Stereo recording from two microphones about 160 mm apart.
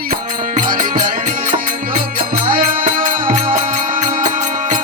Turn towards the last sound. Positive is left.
turn(degrees=-55)  # may be behind; listen again after turning